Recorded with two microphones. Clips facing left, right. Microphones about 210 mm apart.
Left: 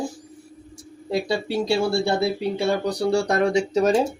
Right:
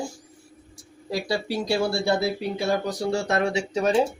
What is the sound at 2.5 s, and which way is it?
Speech, 35° left (ahead or behind).